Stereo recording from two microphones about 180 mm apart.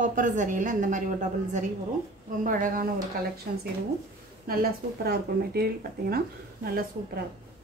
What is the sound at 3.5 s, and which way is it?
Speech, 60° right (ahead or behind).